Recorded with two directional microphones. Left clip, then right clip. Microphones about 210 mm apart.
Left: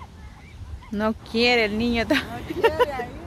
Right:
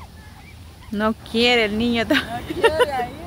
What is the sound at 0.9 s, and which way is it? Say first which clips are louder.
Speech: right 3 dB; 5° right (ahead or behind).